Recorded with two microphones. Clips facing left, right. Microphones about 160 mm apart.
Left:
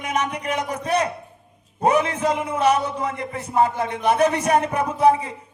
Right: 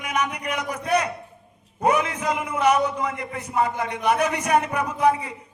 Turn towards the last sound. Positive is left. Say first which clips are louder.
# left 3 dB
turn(degrees=30)  # may be behind; listen again after turning